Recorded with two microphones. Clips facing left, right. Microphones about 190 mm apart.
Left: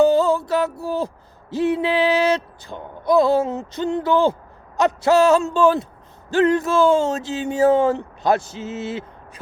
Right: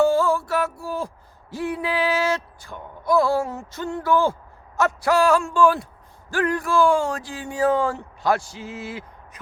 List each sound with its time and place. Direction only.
0.0 s mantra: 20° left (ahead or behind)
1.5 s speech: 25° left (ahead or behind)